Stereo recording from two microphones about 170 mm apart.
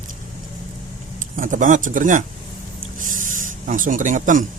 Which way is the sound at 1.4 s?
50° right (ahead or behind).